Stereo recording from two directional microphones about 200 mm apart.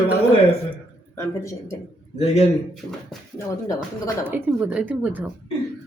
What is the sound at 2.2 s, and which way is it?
Speech, 30° left (ahead or behind).